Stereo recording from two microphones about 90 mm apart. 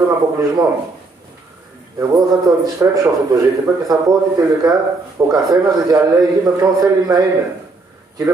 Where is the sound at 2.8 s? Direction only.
25° right (ahead or behind).